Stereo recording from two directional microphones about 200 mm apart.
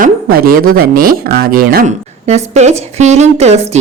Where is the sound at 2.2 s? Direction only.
35° right (ahead or behind).